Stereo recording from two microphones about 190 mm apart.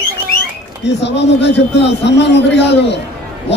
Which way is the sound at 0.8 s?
65° left (ahead or behind).